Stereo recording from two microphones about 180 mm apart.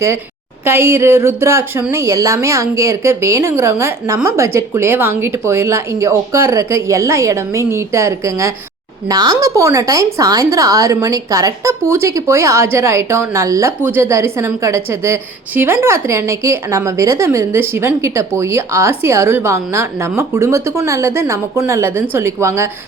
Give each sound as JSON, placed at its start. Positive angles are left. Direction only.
{"t": 0.6, "sound": "a woman's voice", "side_deg": -15}